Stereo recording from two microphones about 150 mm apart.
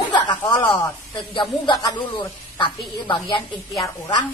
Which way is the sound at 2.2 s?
35° left (ahead or behind).